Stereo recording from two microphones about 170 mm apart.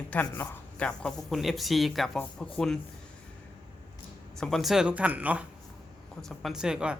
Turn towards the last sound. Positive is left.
turn(degrees=-5)  # may be behind; listen again after turning